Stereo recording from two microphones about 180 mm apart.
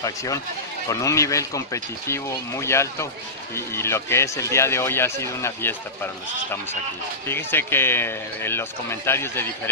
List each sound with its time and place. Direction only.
0.0 s speech: 20° left (ahead or behind)
7.2 s speech: 15° left (ahead or behind)